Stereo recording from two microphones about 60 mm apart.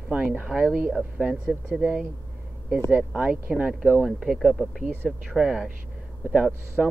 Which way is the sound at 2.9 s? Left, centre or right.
Right.